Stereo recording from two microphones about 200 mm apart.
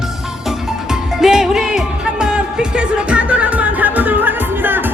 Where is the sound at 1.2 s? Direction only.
5° right (ahead or behind).